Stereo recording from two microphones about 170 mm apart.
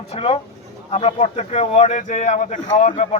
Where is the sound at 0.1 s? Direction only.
40° left (ahead or behind).